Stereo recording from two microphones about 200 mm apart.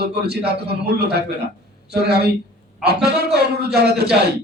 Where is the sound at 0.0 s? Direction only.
55° right (ahead or behind).